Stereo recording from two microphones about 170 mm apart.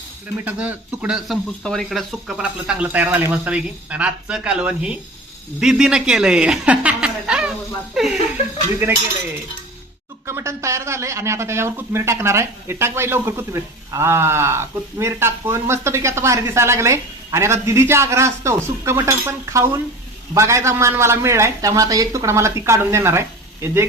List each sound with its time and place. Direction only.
0.4 s speech: 10° right (ahead or behind)
10.2 s speech: 15° right (ahead or behind)